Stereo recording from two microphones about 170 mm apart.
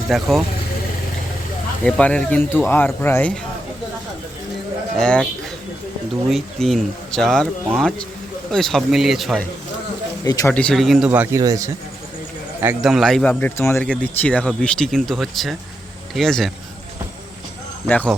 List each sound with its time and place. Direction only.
0.1 s speech: centre (ahead or behind)
1.8 s speech: 5° left (ahead or behind)
4.9 s speech: 5° left (ahead or behind)
6.3 s speech: centre (ahead or behind)
10.2 s speech: 20° left (ahead or behind)
10.5 s speech: 5° left (ahead or behind); by 11.7 s 20° right (ahead or behind)
12.6 s speech: centre (ahead or behind)
17.8 s speech: 10° left (ahead or behind)